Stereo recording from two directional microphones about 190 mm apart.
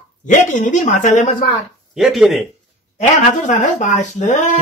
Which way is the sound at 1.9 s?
Centre (ahead or behind).